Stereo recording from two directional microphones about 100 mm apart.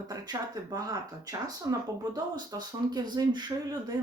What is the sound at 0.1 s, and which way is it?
A man's voice, 35° right (ahead or behind).